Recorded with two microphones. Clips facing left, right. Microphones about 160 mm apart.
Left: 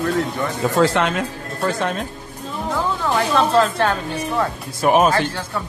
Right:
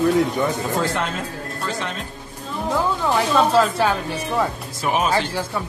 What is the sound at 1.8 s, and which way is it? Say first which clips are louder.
Speech: left 6 dB; 50° left (ahead or behind).